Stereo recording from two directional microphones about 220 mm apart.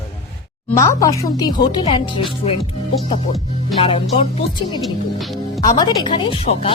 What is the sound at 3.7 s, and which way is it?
Speech, 25° left (ahead or behind).